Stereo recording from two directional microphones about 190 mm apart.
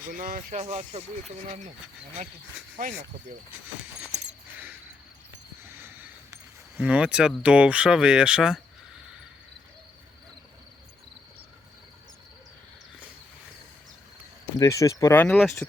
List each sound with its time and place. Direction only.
0.0 s speech: 45° right (ahead or behind)
5.8 s speech: 10° right (ahead or behind)
14.4 s speech: 15° left (ahead or behind)